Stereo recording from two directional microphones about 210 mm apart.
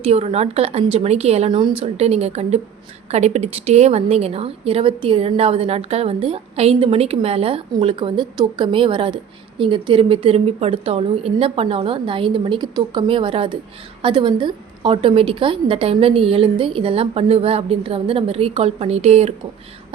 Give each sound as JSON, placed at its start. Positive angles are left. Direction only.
{"t": 0.0, "sound": "a woman's voice", "side_deg": -30}